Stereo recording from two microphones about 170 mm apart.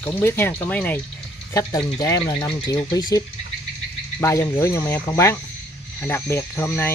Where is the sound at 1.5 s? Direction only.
20° left (ahead or behind).